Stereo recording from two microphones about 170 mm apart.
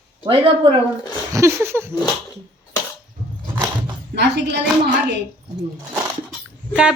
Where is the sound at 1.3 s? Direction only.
15° right (ahead or behind).